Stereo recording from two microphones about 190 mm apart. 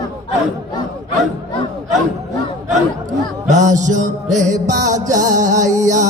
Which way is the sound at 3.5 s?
40° right (ahead or behind).